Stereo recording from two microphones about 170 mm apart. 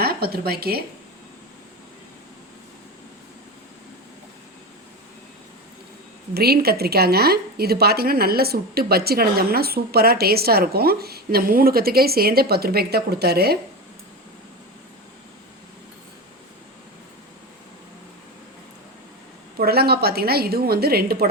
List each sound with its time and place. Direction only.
0.0 s speech: 65° right (ahead or behind)
6.3 s a woman's voice: 65° right (ahead or behind)
19.5 s a woman's voice: 65° right (ahead or behind)